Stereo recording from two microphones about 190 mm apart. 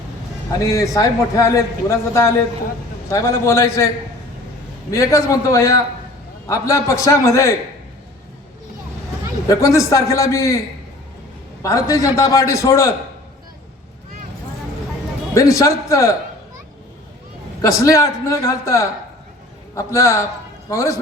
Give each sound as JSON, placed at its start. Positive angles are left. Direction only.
{"t": 0.6, "sound": "a man's voice", "side_deg": 15}
{"t": 4.9, "sound": "a man's voice", "side_deg": 15}
{"t": 9.5, "sound": "a man's voice", "side_deg": 15}
{"t": 11.6, "sound": "a man's voice", "side_deg": 15}
{"t": 15.4, "sound": "a man's voice", "side_deg": 15}
{"t": 17.6, "sound": "a man's voice", "side_deg": 15}